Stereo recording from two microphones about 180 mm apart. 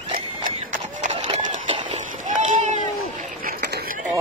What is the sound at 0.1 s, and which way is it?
Horse, 45° right (ahead or behind).